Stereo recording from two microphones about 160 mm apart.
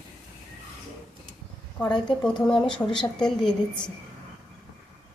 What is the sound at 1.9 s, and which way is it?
A woman's voice, 5° left (ahead or behind).